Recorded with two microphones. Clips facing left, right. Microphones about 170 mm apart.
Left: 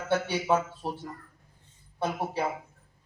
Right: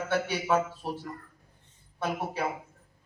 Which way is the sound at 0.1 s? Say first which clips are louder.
Left 2 dB; 30° left (ahead or behind).